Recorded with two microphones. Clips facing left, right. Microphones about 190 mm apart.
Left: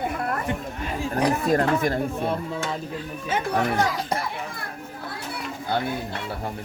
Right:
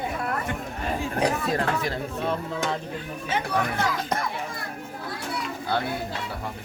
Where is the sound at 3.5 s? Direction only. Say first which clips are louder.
Left 4 dB; 40° left (ahead or behind).